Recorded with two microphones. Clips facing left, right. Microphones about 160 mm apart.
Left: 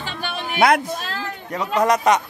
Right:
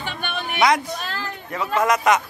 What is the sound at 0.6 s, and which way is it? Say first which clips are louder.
Speech: left 2 dB; 55° left (ahead or behind).